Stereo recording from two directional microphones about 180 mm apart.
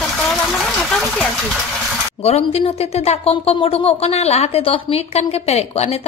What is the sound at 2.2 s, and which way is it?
Speech, 35° left (ahead or behind).